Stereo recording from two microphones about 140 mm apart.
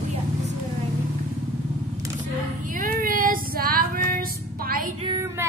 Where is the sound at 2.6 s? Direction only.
70° right (ahead or behind); by 4.9 s 90° right.